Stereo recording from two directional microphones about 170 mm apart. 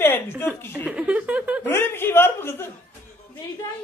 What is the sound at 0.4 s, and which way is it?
Speech, 10° left (ahead or behind).